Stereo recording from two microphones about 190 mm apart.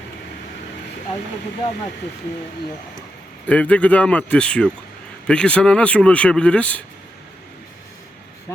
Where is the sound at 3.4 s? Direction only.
5° left (ahead or behind).